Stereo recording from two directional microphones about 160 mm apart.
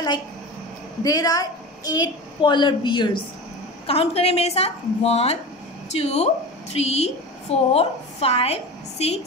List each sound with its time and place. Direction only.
1.0 s a woman's voice: 20° left (ahead or behind); by 9.2 s 40° left (ahead or behind)